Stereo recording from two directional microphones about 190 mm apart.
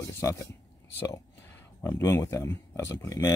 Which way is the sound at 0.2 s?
15° left (ahead or behind).